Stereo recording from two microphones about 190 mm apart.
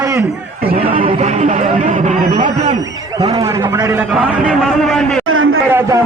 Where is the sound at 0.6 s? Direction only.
50° right (ahead or behind).